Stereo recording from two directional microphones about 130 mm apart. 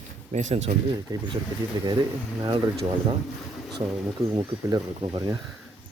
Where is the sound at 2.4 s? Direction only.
35° right (ahead or behind).